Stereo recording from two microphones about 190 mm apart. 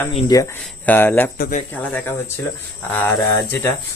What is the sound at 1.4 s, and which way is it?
Speech, 45° left (ahead or behind).